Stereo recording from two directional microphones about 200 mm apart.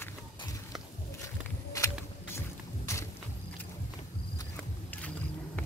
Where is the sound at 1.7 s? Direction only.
15° left (ahead or behind).